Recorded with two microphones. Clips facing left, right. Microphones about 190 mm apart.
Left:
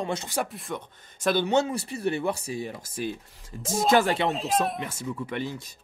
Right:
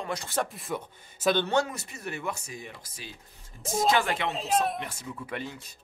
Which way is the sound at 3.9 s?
35° left (ahead or behind).